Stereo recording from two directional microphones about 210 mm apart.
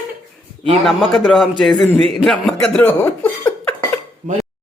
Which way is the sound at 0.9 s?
Centre (ahead or behind).